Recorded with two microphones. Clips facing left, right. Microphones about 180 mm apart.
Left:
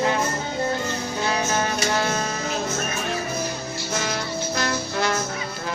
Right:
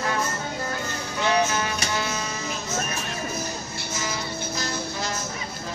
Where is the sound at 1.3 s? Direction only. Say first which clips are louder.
Right 2 dB; 50° left (ahead or behind).